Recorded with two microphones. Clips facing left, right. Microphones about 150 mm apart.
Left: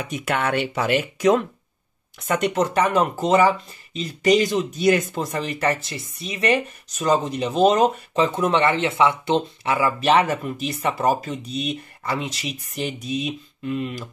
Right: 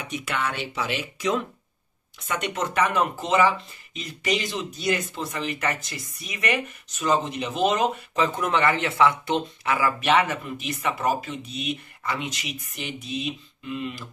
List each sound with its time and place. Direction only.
0.1 s speech: 50° left (ahead or behind)
2.2 s speech: 35° left (ahead or behind)
8.1 s speech: 30° left (ahead or behind); by 14.0 s 45° left (ahead or behind)